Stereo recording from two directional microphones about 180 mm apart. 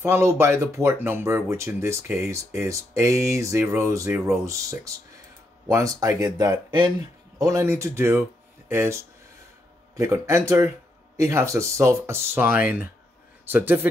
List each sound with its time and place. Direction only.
0.0 s speech: 15° right (ahead or behind)